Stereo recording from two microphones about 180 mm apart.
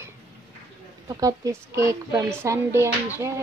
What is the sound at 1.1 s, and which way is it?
A woman's voice, 20° right (ahead or behind).